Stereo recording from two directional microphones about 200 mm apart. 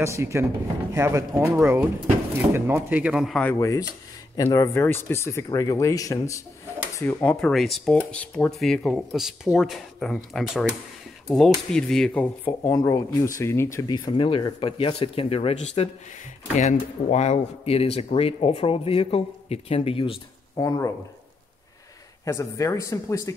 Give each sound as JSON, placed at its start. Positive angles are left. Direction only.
{"t": 0.0, "sound": "speech", "side_deg": -15}
{"t": 3.5, "sound": "speech", "side_deg": 20}
{"t": 12.4, "sound": "speech", "side_deg": 15}
{"t": 22.2, "sound": "speech", "side_deg": 15}